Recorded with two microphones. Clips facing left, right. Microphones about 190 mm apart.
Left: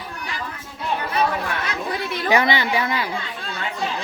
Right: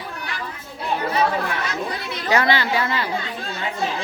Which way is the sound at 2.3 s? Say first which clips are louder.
Even; 15° left (ahead or behind).